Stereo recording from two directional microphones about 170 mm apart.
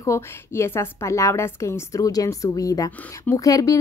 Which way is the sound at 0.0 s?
15° left (ahead or behind).